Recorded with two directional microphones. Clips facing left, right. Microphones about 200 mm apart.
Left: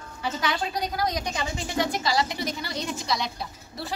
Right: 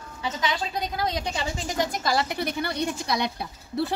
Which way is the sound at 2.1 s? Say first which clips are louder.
Right 1 dB; 55° right (ahead or behind).